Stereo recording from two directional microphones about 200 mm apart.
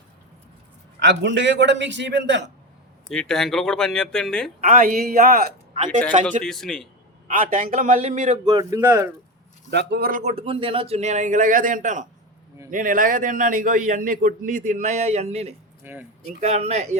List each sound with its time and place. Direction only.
0.9 s a man's voice: 60° right (ahead or behind)
3.1 s speech: 5° left (ahead or behind)
4.6 s a man's voice: 40° right (ahead or behind)
5.7 s speech: 40° right (ahead or behind)
6.4 s speech: centre (ahead or behind)
7.3 s a man's voice: 40° right (ahead or behind)
8.4 s speech: 20° right (ahead or behind)
9.6 s a man's voice: 55° right (ahead or behind); by 15.5 s 30° right (ahead or behind)
15.8 s speech: 10° right (ahead or behind)
16.4 s a man's voice: 35° right (ahead or behind)